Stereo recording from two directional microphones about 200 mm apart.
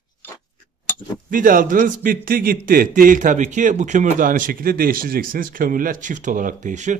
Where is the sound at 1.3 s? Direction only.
45° right (ahead or behind).